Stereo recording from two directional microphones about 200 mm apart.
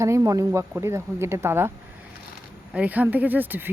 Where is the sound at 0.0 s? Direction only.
15° right (ahead or behind).